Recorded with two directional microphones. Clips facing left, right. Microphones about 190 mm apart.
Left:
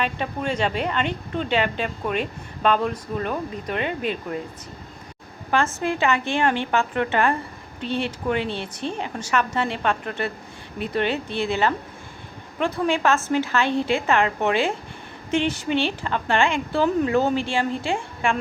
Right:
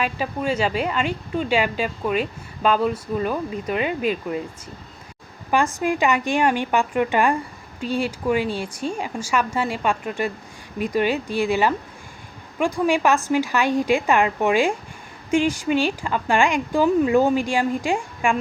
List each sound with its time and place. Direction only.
0.0 s a woman's voice: 5° right (ahead or behind)
5.5 s a woman's voice: 10° right (ahead or behind)